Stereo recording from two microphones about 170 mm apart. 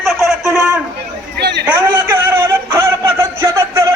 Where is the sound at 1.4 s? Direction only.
80° right.